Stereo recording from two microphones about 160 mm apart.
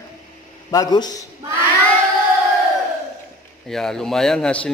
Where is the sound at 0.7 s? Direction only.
25° left (ahead or behind).